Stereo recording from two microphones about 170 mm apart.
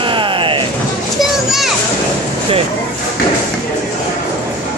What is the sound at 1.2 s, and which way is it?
Children playing, centre (ahead or behind).